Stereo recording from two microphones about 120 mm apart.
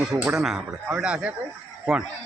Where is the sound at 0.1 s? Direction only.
10° right (ahead or behind).